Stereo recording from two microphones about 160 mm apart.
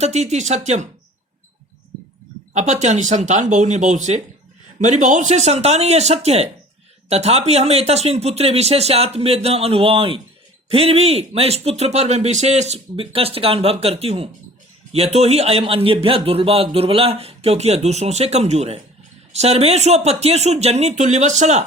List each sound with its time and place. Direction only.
0.0 s speech: 45° right (ahead or behind)
2.5 s speech: 45° right (ahead or behind)